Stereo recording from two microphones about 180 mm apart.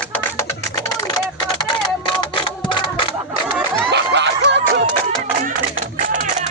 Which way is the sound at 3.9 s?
70° right (ahead or behind).